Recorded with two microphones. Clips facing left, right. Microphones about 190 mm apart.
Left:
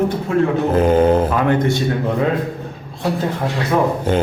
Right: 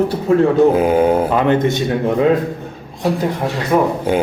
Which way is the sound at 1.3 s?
20° right (ahead or behind).